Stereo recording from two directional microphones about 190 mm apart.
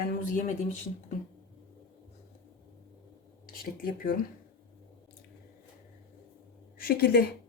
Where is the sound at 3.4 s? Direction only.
45° left (ahead or behind).